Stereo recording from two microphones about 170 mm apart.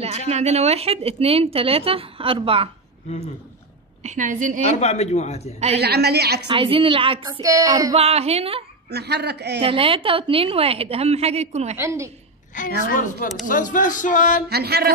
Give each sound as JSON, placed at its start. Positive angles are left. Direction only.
{"t": 0.3, "sound": "speech", "side_deg": -40}
{"t": 4.0, "sound": "a woman's voice", "side_deg": -45}
{"t": 4.6, "sound": "a man's voice", "side_deg": 40}
{"t": 5.8, "sound": "a woman's voice", "side_deg": -70}
{"t": 6.5, "sound": "a woman's voice", "side_deg": -30}
{"t": 7.9, "sound": "speech", "side_deg": -35}
{"t": 8.9, "sound": "a woman's voice", "side_deg": -75}
{"t": 9.6, "sound": "speech", "side_deg": -35}
{"t": 11.8, "sound": "a woman's voice", "side_deg": -15}
{"t": 12.8, "sound": "music", "side_deg": 50}
{"t": 14.5, "sound": "a woman's voice", "side_deg": -70}